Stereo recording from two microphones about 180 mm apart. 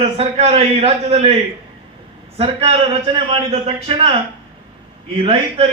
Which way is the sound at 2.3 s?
35° right (ahead or behind).